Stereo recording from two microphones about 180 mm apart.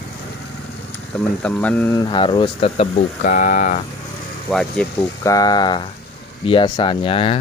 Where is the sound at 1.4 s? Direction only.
5° left (ahead or behind).